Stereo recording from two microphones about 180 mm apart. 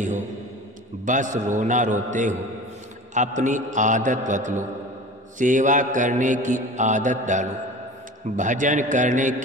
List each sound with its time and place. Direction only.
1.0 s mantra: 45° right (ahead or behind)